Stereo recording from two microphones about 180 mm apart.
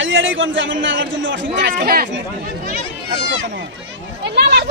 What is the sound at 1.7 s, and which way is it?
Speech, 50° right (ahead or behind).